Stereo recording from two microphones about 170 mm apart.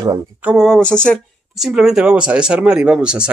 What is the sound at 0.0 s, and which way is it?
Speech, 25° right (ahead or behind).